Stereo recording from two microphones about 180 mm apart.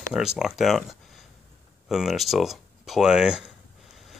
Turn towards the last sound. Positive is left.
turn(degrees=0)  # may be behind; listen again after turning